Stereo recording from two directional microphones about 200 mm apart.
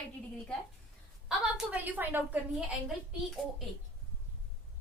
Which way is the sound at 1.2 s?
5° right (ahead or behind).